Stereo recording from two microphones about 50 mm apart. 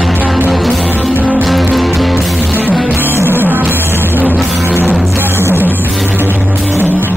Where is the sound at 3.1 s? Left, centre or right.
Right.